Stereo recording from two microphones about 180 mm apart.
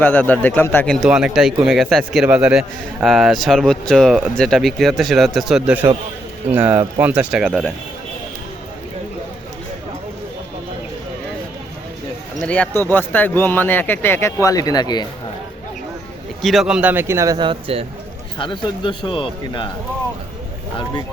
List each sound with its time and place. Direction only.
0.0 s speech: 10° left (ahead or behind)
1.0 s a man's voice: 5° right (ahead or behind)
12.4 s a man's voice: 5° left (ahead or behind); by 15.0 s 20° left (ahead or behind)
16.4 s a man's voice: centre (ahead or behind); by 17.8 s 30° right (ahead or behind)
18.3 s a man's voice: 25° left (ahead or behind)